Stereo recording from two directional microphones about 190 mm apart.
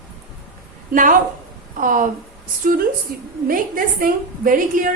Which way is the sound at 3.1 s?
50° right (ahead or behind).